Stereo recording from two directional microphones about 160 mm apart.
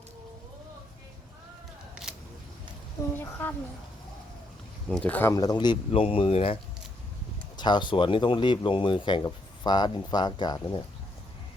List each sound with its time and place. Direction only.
3.2 s speech: 10° left (ahead or behind)
4.9 s speech: 5° left (ahead or behind); by 10.8 s 30° left (ahead or behind)